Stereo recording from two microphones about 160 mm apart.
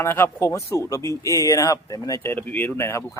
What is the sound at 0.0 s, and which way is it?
A man's voice, 15° left (ahead or behind).